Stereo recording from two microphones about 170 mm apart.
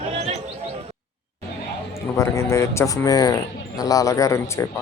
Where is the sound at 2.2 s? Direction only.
15° left (ahead or behind).